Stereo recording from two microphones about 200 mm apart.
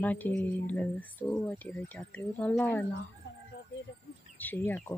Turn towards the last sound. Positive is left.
turn(degrees=10)  # may be behind; listen again after turning